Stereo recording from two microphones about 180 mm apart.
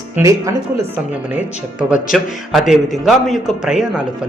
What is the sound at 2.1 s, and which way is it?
A man's voice, centre (ahead or behind).